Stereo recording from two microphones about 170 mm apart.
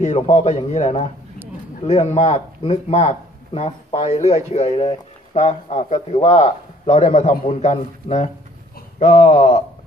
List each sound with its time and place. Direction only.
0.0 s speech: 40° left (ahead or behind)